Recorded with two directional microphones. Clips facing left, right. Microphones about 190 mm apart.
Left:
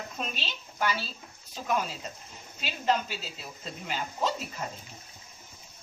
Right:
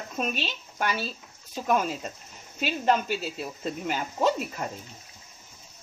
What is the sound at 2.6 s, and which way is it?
Speech, 50° right (ahead or behind).